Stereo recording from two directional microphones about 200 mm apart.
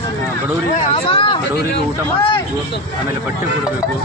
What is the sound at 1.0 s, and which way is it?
Speech, 25° left (ahead or behind).